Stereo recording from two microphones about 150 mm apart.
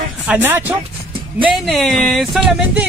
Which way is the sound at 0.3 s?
15° right (ahead or behind).